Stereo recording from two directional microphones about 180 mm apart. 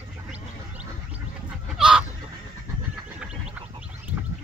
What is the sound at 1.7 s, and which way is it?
Chicken, 5° right (ahead or behind).